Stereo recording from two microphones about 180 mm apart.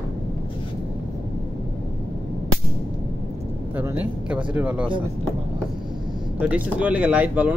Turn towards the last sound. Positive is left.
turn(degrees=-10)  # may be behind; listen again after turning